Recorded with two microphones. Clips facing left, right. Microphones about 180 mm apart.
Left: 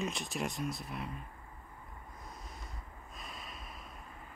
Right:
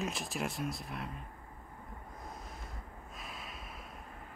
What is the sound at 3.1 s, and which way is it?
Snort, centre (ahead or behind).